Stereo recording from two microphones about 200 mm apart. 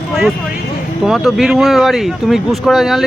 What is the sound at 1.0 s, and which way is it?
Speech, centre (ahead or behind).